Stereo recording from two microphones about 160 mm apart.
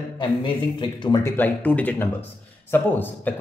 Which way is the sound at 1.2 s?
10° left (ahead or behind).